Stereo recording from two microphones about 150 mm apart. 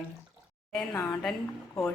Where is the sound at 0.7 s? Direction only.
5° left (ahead or behind).